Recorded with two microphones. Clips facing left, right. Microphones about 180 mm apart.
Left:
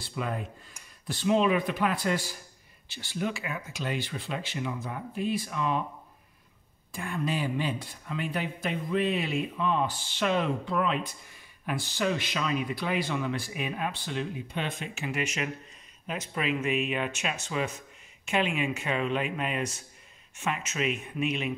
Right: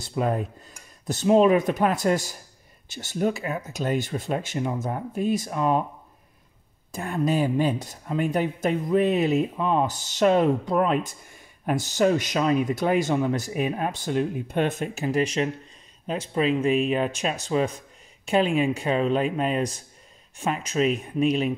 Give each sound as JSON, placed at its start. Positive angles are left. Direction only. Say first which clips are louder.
{"t": 0.0, "sound": "speech", "louder": "right 8 dB", "side_deg": -40}
{"t": 6.9, "sound": "speech", "louder": "right 7 dB", "side_deg": -40}